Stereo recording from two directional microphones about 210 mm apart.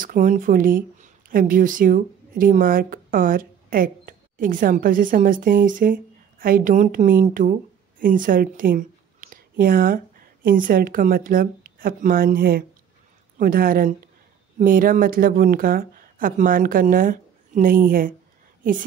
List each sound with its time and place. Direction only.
0.0 s a woman's voice: 40° right (ahead or behind)